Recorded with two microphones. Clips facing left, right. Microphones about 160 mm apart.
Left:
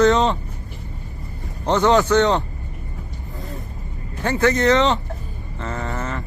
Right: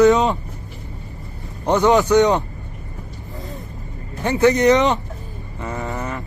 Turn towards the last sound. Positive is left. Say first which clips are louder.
# right 1 dB
turn(degrees=-15)  # may be behind; listen again after turning